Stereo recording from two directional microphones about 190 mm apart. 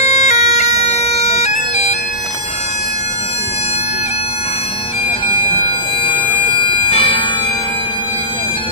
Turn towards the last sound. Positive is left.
turn(degrees=30)  # may be behind; listen again after turning